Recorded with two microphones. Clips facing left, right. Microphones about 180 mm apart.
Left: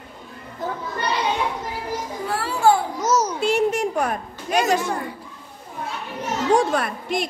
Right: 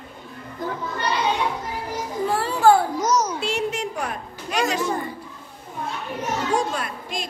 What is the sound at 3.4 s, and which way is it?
A child's voice, 50° left (ahead or behind).